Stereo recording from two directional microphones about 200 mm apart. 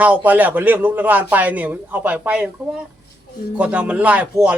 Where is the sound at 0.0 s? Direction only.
5° right (ahead or behind).